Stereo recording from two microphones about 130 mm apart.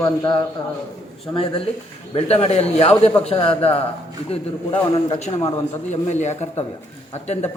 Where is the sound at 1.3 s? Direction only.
45° left (ahead or behind).